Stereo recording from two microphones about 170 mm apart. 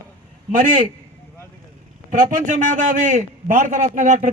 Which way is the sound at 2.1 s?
50° right (ahead or behind).